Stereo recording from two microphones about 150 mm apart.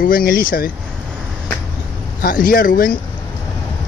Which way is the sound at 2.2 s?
75° left (ahead or behind).